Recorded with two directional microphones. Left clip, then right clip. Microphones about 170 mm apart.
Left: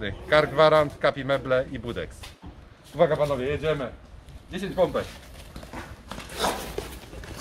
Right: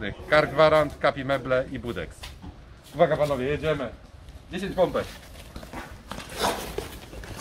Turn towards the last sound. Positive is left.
turn(degrees=10)  # may be behind; listen again after turning